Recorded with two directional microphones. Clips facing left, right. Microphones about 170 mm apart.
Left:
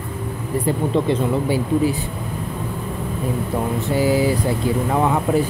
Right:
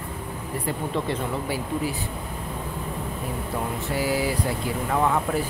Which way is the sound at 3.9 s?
25° left (ahead or behind).